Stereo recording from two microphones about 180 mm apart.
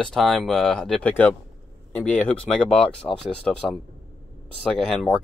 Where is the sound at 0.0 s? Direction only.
Centre (ahead or behind).